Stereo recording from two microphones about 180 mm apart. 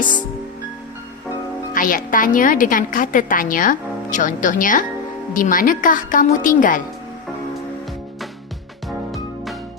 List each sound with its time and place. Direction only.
1.7 s a woman's voice: 50° left (ahead or behind)
9.1 s music: centre (ahead or behind)